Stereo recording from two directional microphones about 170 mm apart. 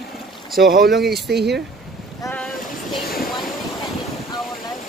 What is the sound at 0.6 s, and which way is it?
Speech, 75° right (ahead or behind).